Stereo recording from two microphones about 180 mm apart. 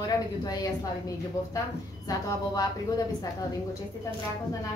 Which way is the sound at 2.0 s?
20° left (ahead or behind).